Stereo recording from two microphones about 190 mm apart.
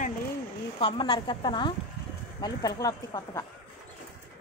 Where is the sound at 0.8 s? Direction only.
25° left (ahead or behind).